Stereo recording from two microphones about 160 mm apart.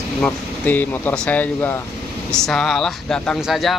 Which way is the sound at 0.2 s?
10° left (ahead or behind).